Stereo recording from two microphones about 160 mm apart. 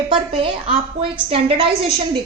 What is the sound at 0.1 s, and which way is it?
A woman's voice, 35° right (ahead or behind).